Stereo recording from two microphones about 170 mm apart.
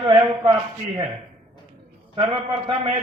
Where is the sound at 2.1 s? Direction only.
30° right (ahead or behind).